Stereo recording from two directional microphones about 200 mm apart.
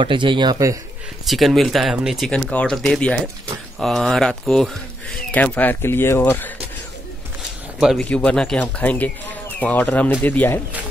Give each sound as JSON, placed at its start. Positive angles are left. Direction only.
{"t": 0.0, "sound": "speech", "side_deg": -25}
{"t": 1.2, "sound": "speech", "side_deg": 0}
{"t": 7.8, "sound": "speech", "side_deg": 0}